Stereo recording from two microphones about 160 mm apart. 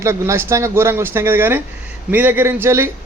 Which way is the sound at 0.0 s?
15° right (ahead or behind).